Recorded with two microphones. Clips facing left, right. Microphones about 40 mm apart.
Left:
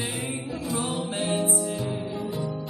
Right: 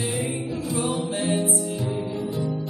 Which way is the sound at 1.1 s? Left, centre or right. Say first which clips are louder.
Right 2 dB; left.